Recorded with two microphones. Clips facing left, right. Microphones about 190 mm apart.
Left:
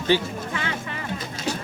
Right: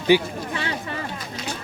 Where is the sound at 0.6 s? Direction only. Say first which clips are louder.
Right 2 dB; 35° right (ahead or behind).